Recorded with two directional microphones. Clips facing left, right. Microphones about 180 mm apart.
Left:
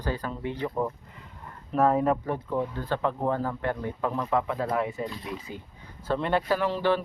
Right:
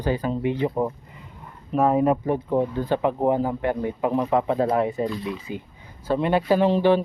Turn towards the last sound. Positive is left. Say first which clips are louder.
# right 7 dB
turn(degrees=-20)  # may be behind; listen again after turning